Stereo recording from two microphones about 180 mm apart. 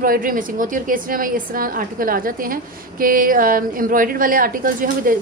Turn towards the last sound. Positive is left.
turn(degrees=-50)  # may be behind; listen again after turning